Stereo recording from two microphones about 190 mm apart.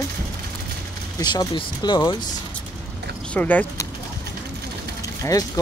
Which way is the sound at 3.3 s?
10° left (ahead or behind).